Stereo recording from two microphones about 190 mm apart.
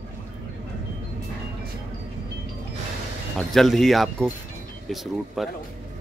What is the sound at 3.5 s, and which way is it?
Speech, centre (ahead or behind).